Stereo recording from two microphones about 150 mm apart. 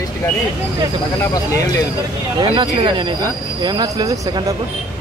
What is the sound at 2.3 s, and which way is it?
Speech, 30° right (ahead or behind).